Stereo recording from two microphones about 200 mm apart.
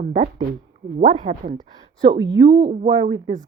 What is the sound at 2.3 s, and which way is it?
Speech, 55° right (ahead or behind).